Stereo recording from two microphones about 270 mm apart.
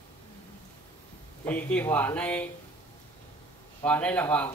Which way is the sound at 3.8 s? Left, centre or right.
Centre.